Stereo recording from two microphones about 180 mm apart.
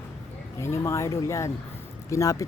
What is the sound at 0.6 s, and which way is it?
Speech, 15° left (ahead or behind).